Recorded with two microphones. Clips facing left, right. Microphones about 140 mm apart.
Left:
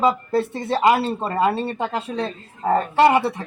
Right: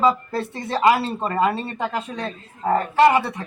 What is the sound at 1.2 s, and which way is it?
A woman's voice, 30° left (ahead or behind).